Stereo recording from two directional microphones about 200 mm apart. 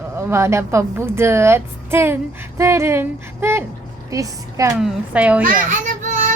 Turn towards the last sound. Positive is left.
turn(degrees=-40)  # may be behind; listen again after turning